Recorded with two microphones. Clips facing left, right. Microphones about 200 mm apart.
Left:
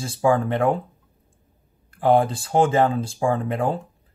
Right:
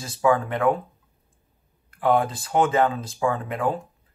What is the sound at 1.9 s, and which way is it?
Speech, 30° left (ahead or behind).